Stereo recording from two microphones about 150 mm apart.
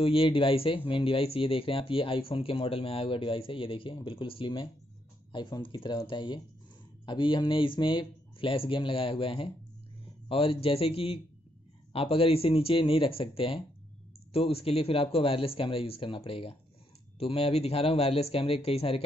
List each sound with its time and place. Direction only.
0.0 s speech: 35° left (ahead or behind)